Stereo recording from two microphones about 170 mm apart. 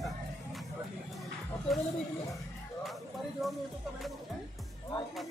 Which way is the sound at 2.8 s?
Centre (ahead or behind).